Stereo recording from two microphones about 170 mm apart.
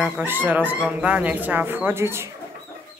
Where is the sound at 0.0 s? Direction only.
10° right (ahead or behind).